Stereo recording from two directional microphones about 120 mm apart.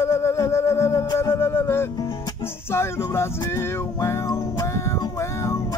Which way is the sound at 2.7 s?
20° left (ahead or behind).